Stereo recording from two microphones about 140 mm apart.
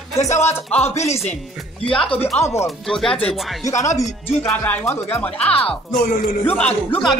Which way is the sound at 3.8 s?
25° left (ahead or behind).